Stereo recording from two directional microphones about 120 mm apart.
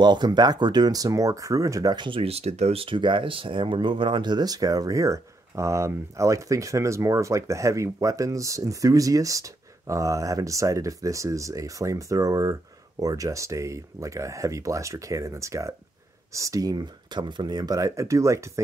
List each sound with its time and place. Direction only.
0.0 s speech: 40° right (ahead or behind)